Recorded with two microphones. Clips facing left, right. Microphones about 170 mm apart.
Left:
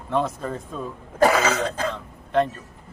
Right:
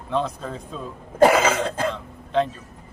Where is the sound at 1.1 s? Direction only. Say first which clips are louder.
Right 3 dB; 20° right (ahead or behind).